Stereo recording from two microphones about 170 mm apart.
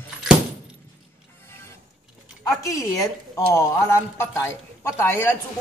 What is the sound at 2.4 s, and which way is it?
A man's voice, 20° left (ahead or behind).